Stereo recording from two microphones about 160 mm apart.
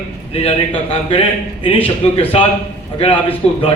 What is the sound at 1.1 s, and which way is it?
A man's voice, 35° left (ahead or behind).